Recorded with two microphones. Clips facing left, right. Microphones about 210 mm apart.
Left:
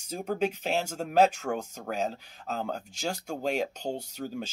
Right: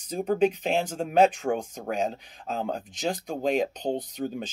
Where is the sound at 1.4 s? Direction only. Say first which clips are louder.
Right 4 dB; 20° right (ahead or behind).